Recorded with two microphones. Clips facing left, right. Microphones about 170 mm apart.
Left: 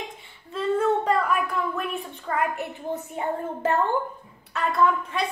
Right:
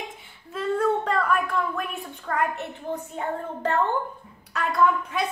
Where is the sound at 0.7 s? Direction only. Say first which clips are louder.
Left 1 dB; 10° left (ahead or behind).